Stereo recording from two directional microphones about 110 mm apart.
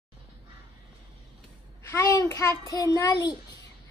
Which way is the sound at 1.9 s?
25° left (ahead or behind).